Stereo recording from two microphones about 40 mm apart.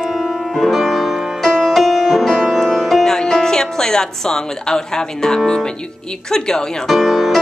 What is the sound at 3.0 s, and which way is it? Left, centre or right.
Speech, centre.